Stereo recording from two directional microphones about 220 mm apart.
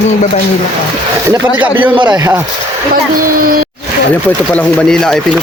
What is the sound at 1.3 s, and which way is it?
A man's voice, 15° right (ahead or behind).